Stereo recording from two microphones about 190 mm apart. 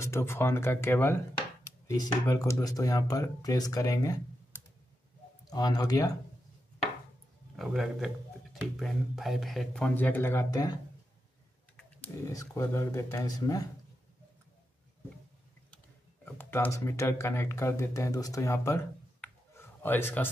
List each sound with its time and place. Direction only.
0.0 s speech: 15° left (ahead or behind)
7.5 s speech: centre (ahead or behind); by 10.8 s 20° left (ahead or behind)
12.3 s speech: 15° left (ahead or behind)
16.3 s speech: 10° left (ahead or behind)
19.2 s a sound: 10° left (ahead or behind)